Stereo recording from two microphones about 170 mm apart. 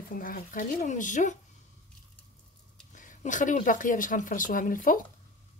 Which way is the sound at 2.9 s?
50° left (ahead or behind).